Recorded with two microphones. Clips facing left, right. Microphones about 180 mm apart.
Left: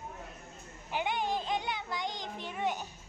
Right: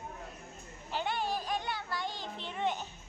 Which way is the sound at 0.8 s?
15° left (ahead or behind).